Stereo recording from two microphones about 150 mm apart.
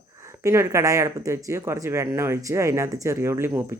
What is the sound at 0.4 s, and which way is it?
Speech, 20° right (ahead or behind).